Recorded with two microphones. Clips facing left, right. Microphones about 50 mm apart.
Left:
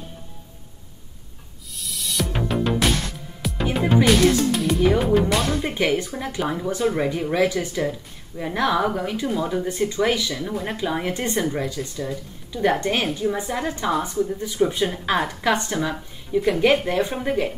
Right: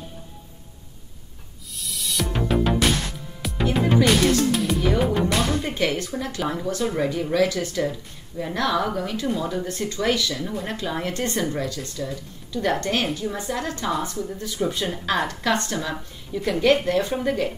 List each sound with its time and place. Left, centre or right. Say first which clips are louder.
1.7 s music: even; centre
4.0 s speech: left 3 dB; centre
5.6 s speech: left 2 dB; centre